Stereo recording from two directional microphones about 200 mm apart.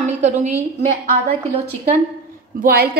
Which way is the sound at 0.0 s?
35° right (ahead or behind).